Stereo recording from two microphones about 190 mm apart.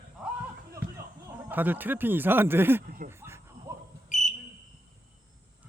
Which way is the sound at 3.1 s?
15° right (ahead or behind).